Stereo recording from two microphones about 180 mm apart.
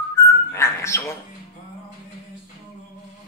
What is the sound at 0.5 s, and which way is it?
Dog, 15° left (ahead or behind).